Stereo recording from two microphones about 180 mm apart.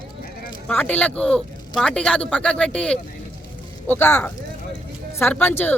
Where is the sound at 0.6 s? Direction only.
10° left (ahead or behind).